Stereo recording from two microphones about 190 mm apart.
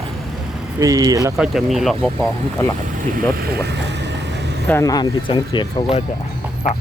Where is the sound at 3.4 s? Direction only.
55° right (ahead or behind).